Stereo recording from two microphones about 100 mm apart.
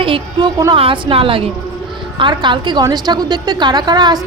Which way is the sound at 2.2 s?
50° right (ahead or behind).